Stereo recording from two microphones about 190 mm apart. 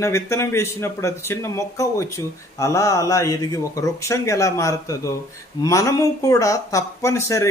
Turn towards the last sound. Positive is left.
turn(degrees=15)  # may be behind; listen again after turning